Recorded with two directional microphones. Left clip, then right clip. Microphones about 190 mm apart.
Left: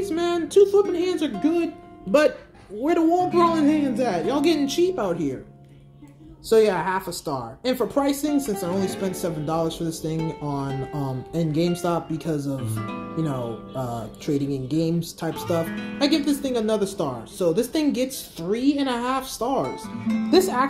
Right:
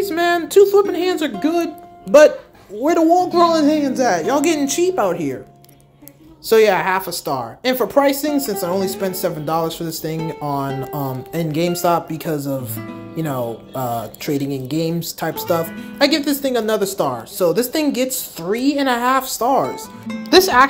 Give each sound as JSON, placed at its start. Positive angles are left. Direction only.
{"t": 0.0, "sound": "a woman's voice", "side_deg": -20}
{"t": 6.4, "sound": "a woman's voice", "side_deg": -20}
{"t": 8.4, "sound": "speech", "side_deg": -5}
{"t": 8.6, "sound": "a woman's voice", "side_deg": -20}
{"t": 12.7, "sound": "speech", "side_deg": 0}
{"t": 13.2, "sound": "a woman's voice", "side_deg": -20}
{"t": 15.6, "sound": "speech", "side_deg": 0}
{"t": 16.3, "sound": "a woman's voice", "side_deg": -20}